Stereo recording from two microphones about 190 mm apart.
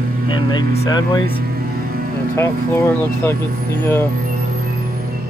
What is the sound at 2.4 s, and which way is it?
Speech, 15° left (ahead or behind).